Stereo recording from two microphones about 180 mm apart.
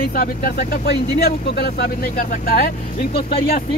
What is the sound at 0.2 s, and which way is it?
Speech, 55° left (ahead or behind).